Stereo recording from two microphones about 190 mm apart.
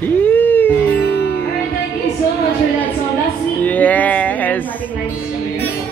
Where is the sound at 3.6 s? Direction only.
10° left (ahead or behind).